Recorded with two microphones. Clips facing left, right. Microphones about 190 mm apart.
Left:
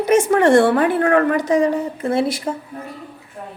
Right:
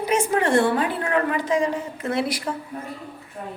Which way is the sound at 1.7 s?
30° left (ahead or behind).